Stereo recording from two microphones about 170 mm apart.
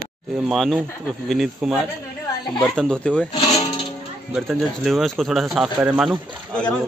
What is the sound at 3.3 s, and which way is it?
Music, 25° left (ahead or behind).